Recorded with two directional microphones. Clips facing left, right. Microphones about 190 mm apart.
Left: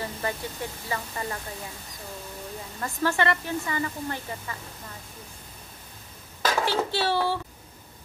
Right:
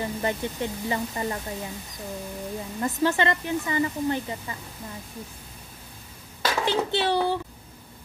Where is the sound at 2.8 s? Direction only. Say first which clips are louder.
Right 2 dB; 20° right (ahead or behind).